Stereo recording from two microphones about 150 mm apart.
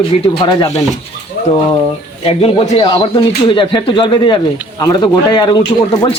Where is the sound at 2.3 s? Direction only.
40° left (ahead or behind).